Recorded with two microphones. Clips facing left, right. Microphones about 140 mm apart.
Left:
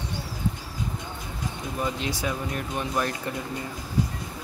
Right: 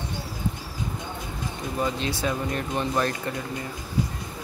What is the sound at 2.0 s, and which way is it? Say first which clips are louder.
Speech: right 2 dB; 15° left (ahead or behind).